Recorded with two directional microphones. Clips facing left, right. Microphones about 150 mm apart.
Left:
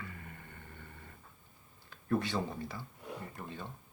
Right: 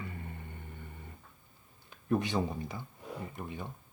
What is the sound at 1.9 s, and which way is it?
Speech, 20° right (ahead or behind).